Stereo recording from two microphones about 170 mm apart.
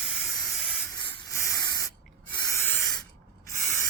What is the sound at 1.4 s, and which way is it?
Spray, 20° left (ahead or behind).